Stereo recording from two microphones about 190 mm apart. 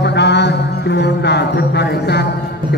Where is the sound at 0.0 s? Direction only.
65° left (ahead or behind).